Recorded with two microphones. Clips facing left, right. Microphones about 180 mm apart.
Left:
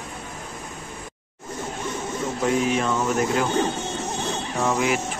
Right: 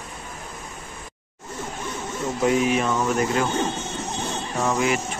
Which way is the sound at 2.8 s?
Centre (ahead or behind).